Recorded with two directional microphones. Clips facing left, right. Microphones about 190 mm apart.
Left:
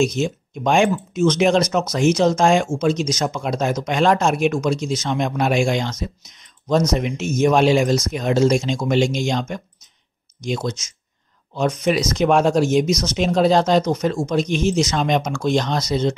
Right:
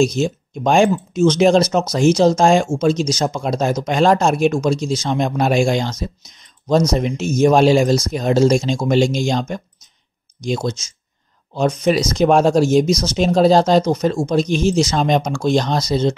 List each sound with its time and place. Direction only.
0.0 s speech: 35° right (ahead or behind)